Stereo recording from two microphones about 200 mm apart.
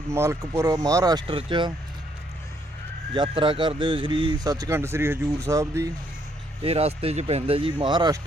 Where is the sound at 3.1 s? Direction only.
25° right (ahead or behind).